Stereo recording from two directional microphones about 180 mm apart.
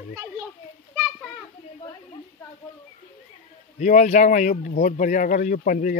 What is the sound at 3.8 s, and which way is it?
Speech, 45° left (ahead or behind).